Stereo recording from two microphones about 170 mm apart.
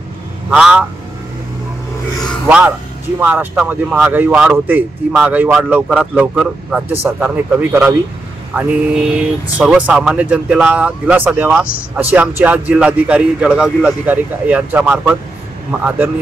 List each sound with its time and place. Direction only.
0.5 s speech: 5° right (ahead or behind)
2.4 s speech: 5° right (ahead or behind)